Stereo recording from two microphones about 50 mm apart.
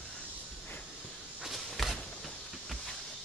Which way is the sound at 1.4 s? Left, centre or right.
Centre.